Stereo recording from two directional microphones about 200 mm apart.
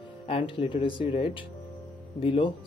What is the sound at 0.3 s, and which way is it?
Speech, 25° left (ahead or behind).